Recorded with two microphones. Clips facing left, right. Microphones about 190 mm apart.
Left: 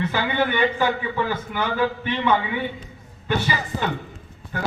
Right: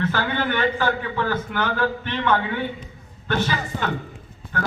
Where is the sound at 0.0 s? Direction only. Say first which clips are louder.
Left 1 dB; 10° left (ahead or behind).